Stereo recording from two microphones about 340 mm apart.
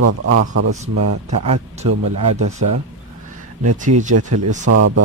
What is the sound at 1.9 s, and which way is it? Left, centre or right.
Speech, right.